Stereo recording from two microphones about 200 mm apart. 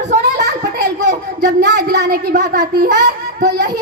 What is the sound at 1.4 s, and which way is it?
A child's voice, 60° right (ahead or behind).